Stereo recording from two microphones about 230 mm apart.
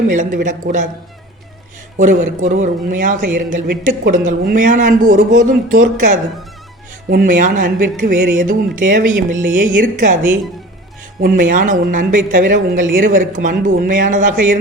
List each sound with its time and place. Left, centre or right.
0.1 s a man's voice: right
2.0 s a man's voice: right
11.2 s a man's voice: right